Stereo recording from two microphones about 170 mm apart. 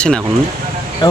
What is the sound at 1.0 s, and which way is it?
Speech, 25° left (ahead or behind).